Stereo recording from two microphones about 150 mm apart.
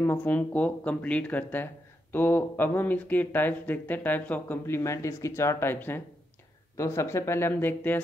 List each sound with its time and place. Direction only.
0.0 s speech: 15° left (ahead or behind)